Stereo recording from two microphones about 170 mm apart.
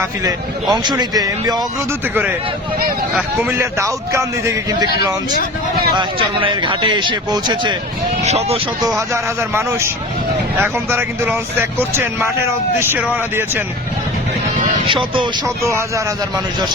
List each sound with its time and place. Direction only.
0.3 s a man's voice: 25° right (ahead or behind)
3.5 s a man's voice: 15° right (ahead or behind)
8.2 s speech: 40° right (ahead or behind)
9.0 s a man's voice: 15° right (ahead or behind)